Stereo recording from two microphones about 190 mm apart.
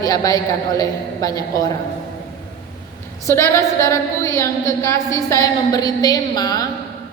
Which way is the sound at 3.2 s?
15° left (ahead or behind).